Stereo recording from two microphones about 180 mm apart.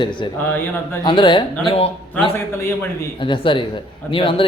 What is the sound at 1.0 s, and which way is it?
Speech, 25° left (ahead or behind).